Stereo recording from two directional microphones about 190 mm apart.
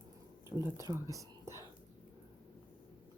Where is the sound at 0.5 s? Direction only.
5° right (ahead or behind).